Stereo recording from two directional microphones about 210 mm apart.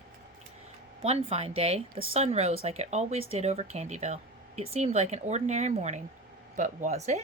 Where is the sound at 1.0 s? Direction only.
30° right (ahead or behind).